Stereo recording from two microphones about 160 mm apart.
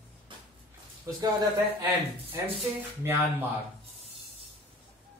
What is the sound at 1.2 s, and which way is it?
Speech, 25° right (ahead or behind).